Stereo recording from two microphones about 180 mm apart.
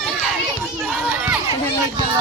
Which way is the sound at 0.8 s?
5° right (ahead or behind).